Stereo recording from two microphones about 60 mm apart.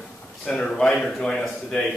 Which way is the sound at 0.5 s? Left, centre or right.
Centre.